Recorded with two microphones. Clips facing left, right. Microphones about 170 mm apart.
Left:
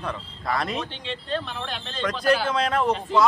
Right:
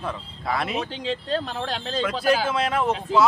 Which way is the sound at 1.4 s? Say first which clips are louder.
Right 4 dB; 40° right (ahead or behind).